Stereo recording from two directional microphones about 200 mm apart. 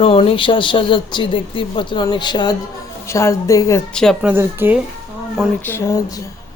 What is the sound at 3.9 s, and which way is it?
Speech, 5° left (ahead or behind).